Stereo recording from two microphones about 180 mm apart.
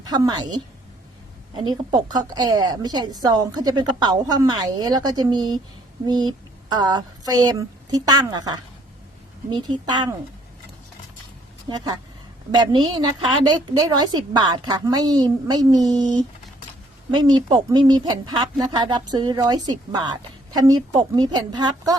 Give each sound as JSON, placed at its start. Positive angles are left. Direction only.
{"t": 0.0, "sound": "a woman's voice", "side_deg": -20}
{"t": 1.6, "sound": "a woman's voice", "side_deg": -20}
{"t": 11.7, "sound": "a woman's voice", "side_deg": -30}
{"t": 17.1, "sound": "a woman's voice", "side_deg": -25}